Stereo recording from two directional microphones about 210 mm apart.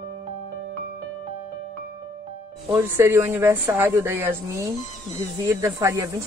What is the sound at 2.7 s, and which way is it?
Speech, 10° right (ahead or behind).